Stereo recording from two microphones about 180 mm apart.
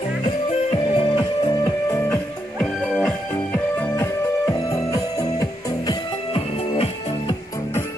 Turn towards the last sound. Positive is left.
turn(degrees=35)  # may be behind; listen again after turning